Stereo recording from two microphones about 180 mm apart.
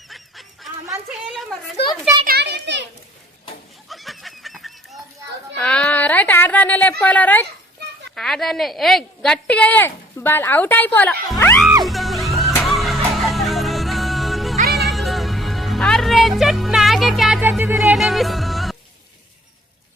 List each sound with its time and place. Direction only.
0.1 s goose: centre (ahead or behind)
1.8 s a sound: 65° left (ahead or behind)
2.2 s children playing: 65° right (ahead or behind)
3.8 s a sound: centre (ahead or behind)
7.0 s a woman's voice: 10° left (ahead or behind)
11.9 s music: centre (ahead or behind)